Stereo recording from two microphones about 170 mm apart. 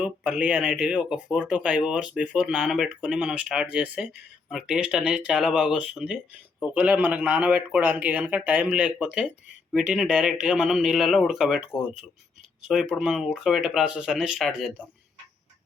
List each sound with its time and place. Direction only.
0.0 s a man's voice: 5° right (ahead or behind)
12.6 s speech: centre (ahead or behind)